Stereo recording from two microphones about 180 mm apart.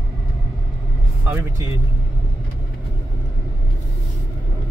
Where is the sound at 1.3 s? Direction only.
15° right (ahead or behind).